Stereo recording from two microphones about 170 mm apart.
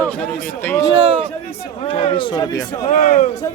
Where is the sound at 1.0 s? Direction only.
30° right (ahead or behind).